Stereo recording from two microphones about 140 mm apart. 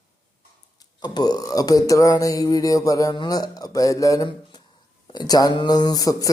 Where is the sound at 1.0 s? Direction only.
30° left (ahead or behind).